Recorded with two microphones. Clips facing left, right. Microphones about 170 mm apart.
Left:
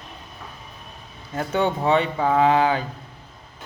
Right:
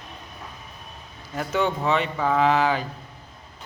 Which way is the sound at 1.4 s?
35° left (ahead or behind).